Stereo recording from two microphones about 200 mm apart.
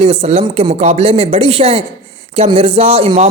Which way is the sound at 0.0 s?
30° right (ahead or behind).